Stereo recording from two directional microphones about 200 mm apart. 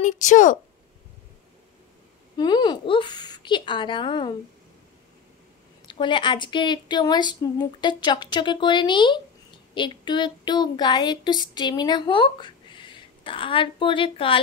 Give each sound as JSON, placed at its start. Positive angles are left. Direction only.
{"t": 0.0, "sound": "a woman's voice", "side_deg": 40}
{"t": 2.3, "sound": "a woman's voice", "side_deg": 20}
{"t": 5.9, "sound": "a woman's voice", "side_deg": 25}